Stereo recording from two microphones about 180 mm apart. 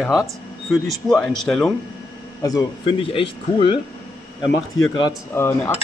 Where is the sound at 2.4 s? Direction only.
25° left (ahead or behind).